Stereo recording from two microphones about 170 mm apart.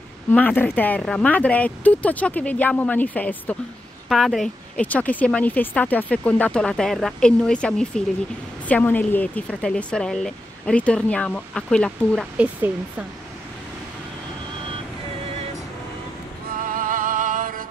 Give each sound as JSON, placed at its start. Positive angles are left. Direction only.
{"t": 0.3, "sound": "speech", "side_deg": 10}
{"t": 16.6, "sound": "music", "side_deg": -55}